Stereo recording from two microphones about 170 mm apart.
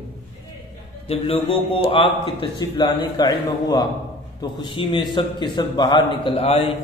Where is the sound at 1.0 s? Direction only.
35° left (ahead or behind).